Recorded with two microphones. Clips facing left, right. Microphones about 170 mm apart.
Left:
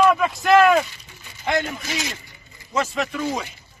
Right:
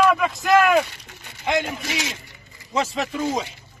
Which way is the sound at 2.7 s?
30° right (ahead or behind).